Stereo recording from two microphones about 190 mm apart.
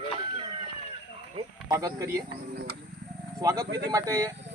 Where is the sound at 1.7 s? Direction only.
15° right (ahead or behind).